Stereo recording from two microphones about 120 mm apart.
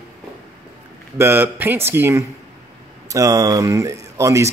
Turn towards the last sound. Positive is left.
turn(degrees=-25)  # may be behind; listen again after turning